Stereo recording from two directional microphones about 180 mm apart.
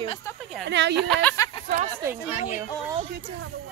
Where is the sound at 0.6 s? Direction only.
75° right (ahead or behind).